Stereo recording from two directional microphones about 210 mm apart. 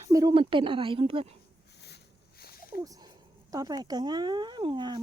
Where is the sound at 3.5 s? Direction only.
20° right (ahead or behind).